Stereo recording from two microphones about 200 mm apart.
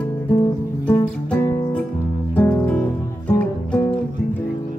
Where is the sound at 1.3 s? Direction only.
10° left (ahead or behind).